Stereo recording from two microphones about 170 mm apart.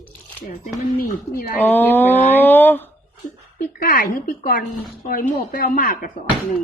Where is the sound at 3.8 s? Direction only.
55° left (ahead or behind).